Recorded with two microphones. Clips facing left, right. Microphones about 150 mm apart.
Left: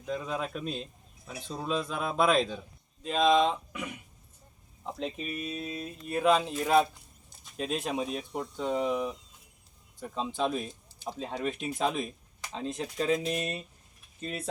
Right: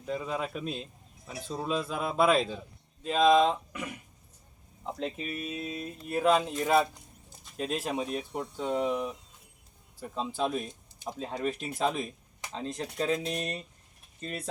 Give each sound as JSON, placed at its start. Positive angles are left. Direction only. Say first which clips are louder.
{"t": 0.0, "sound": "a man's voice", "louder": "even", "side_deg": -5}